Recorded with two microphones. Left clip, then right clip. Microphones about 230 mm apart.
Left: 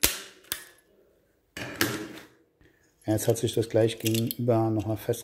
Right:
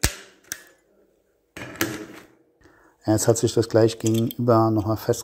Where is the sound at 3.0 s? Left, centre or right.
Right.